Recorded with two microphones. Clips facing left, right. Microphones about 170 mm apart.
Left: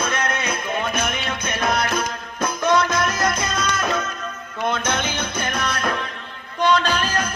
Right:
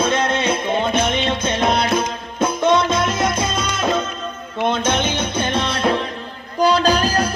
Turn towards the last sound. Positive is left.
turn(degrees=-35)  # may be behind; listen again after turning